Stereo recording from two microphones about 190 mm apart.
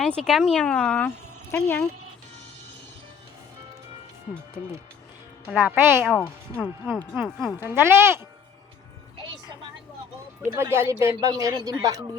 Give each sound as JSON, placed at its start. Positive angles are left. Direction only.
{"t": 0.0, "sound": "a woman's voice", "side_deg": 0}
{"t": 5.5, "sound": "a man's voice", "side_deg": -10}
{"t": 6.9, "sound": "speech", "side_deg": 5}
{"t": 7.6, "sound": "a man's voice", "side_deg": -10}
{"t": 9.1, "sound": "music", "side_deg": -25}
{"t": 10.5, "sound": "a man's voice", "side_deg": -10}